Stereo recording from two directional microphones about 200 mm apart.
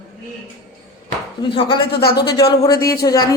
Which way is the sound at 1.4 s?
25° left (ahead or behind).